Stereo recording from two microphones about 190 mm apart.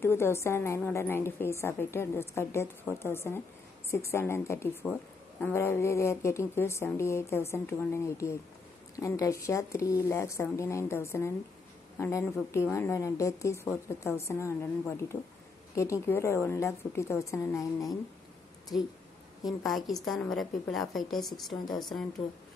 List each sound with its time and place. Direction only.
0.0 s a woman's voice: 15° left (ahead or behind)
20.1 s a woman's voice: centre (ahead or behind)